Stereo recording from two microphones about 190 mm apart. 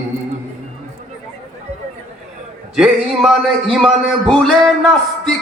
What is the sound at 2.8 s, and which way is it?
A man's voice, centre (ahead or behind).